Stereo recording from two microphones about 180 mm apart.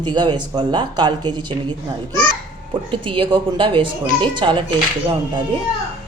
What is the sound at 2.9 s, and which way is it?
Speech, 30° right (ahead or behind).